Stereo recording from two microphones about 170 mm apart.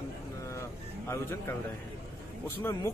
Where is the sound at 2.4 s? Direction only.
15° left (ahead or behind).